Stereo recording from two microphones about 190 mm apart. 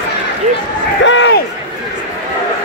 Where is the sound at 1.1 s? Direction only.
65° left (ahead or behind).